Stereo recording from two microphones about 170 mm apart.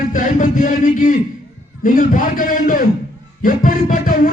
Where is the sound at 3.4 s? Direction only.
55° left (ahead or behind).